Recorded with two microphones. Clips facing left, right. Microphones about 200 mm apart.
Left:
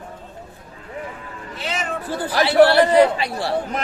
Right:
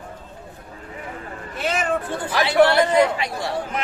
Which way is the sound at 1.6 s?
50° right (ahead or behind).